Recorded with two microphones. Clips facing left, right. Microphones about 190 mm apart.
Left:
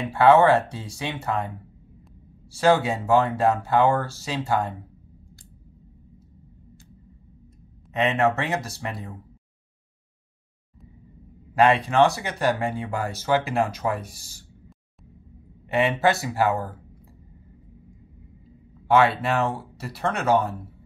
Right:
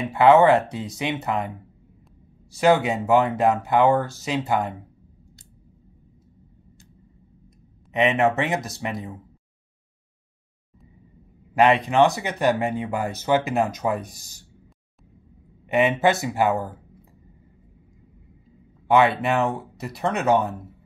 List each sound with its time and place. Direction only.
0.0 s speech: 20° right (ahead or behind)
2.5 s speech: 15° right (ahead or behind)
7.9 s speech: 20° right (ahead or behind)
11.5 s speech: 20° right (ahead or behind)
15.7 s speech: 20° right (ahead or behind)
18.9 s speech: 20° right (ahead or behind)